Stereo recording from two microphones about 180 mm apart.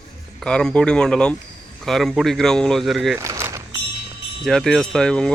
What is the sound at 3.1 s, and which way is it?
Vehicle, 15° right (ahead or behind).